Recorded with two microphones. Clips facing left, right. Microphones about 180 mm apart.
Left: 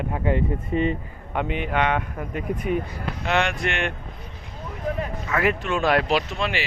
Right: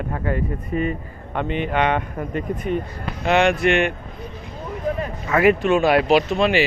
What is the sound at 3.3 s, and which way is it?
Speech, 15° right (ahead or behind).